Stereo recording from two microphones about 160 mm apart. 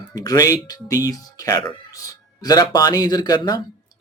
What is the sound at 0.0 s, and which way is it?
Speech, 20° left (ahead or behind).